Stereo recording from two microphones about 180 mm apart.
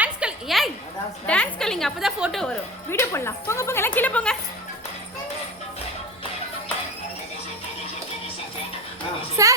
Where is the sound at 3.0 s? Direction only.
15° left (ahead or behind).